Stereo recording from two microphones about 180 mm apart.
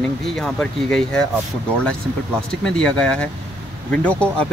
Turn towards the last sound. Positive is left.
turn(degrees=5)  # may be behind; listen again after turning